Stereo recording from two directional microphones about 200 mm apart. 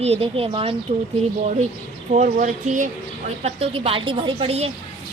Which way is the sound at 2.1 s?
35° right (ahead or behind).